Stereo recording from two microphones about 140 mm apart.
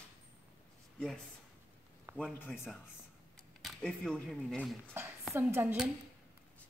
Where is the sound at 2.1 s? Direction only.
15° right (ahead or behind).